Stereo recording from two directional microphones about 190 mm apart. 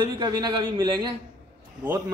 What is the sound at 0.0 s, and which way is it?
A man's voice, 25° right (ahead or behind).